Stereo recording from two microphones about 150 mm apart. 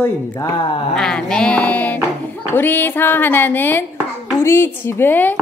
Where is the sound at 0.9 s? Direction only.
5° left (ahead or behind).